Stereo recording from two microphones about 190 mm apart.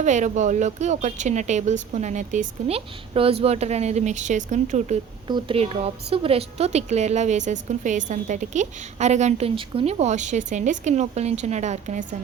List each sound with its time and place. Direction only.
0.0 s a woman's voice: 40° right (ahead or behind)
5.3 s a woman's voice: 30° right (ahead or behind)